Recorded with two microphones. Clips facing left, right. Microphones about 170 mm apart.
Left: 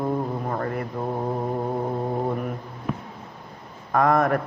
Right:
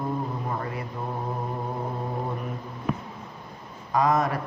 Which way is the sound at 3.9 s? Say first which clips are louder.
Left 3 dB; 60° left (ahead or behind).